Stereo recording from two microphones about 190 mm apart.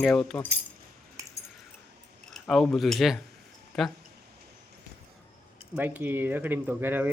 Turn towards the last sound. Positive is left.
turn(degrees=-10)  # may be behind; listen again after turning